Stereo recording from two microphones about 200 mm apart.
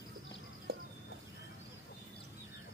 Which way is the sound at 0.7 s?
55° right (ahead or behind).